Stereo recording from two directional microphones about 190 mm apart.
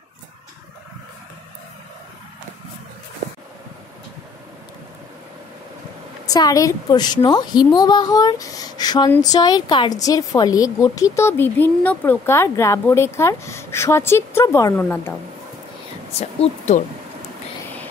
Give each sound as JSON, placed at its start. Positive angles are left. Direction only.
{"t": 6.2, "sound": "a woman's voice", "side_deg": 20}
{"t": 16.1, "sound": "speech", "side_deg": 35}